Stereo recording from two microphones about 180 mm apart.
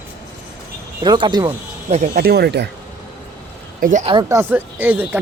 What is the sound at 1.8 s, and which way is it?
Speech, 40° right (ahead or behind).